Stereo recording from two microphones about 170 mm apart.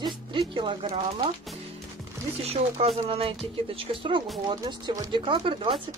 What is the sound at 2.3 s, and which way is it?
Speech, 35° right (ahead or behind).